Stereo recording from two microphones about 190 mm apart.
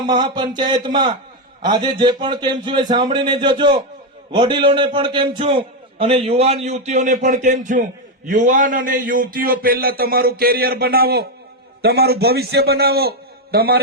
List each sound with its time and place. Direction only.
0.1 s a man's voice: 25° right (ahead or behind); by 13.8 s 55° right (ahead or behind)